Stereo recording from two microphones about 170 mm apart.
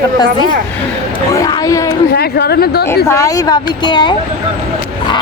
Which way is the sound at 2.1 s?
70° left (ahead or behind).